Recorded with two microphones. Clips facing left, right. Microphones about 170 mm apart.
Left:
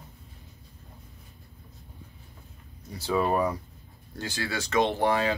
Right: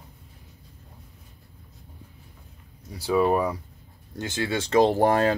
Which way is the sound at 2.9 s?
10° right (ahead or behind).